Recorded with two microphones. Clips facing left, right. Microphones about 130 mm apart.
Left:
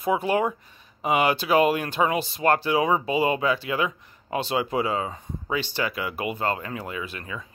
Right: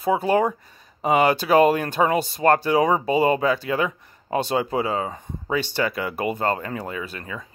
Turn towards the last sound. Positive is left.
turn(degrees=-40)  # may be behind; listen again after turning